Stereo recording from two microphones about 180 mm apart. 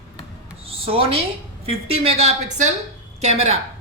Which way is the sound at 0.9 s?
30° right (ahead or behind).